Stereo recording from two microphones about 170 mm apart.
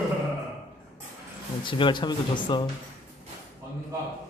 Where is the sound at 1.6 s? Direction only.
30° left (ahead or behind).